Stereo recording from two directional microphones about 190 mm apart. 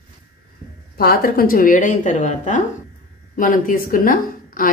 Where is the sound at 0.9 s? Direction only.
50° left (ahead or behind).